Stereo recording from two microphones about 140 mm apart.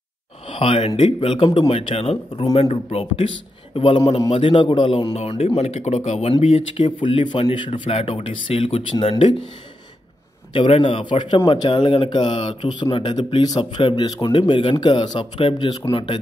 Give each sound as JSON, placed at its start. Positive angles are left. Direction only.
{"t": 0.5, "sound": "speech", "side_deg": 40}
{"t": 6.4, "sound": "speech", "side_deg": 40}
{"t": 10.5, "sound": "speech", "side_deg": 35}